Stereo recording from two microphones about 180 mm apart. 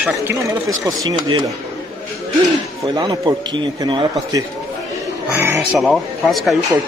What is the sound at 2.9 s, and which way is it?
Speech, 20° right (ahead or behind).